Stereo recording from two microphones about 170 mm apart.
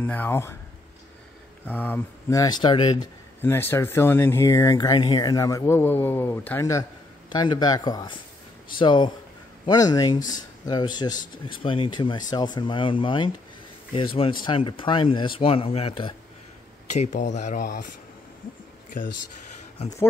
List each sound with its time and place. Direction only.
0.0 s speech: 10° left (ahead or behind)
1.7 s speech: 10° left (ahead or behind); by 3.1 s 30° left (ahead or behind)
3.4 s speech: 15° left (ahead or behind)
7.2 s speech: 25° left (ahead or behind)
16.9 s speech: 45° left (ahead or behind)